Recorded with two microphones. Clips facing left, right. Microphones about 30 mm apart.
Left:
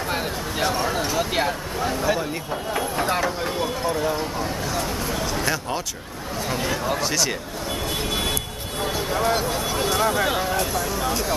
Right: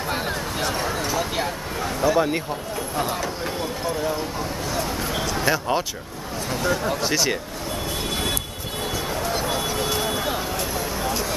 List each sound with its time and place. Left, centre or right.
0.1 s a sound: centre
0.8 s speech: centre
2.1 s speech: left
3.8 s speech: centre
5.3 s speech: centre
6.5 s speech: centre
7.0 s speech: centre
8.9 s a sound: left
9.5 s speech: centre
10.1 s speech: left
10.5 s a sound: centre